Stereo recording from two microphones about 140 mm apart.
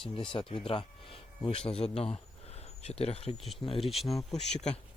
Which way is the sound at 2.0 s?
45° left (ahead or behind).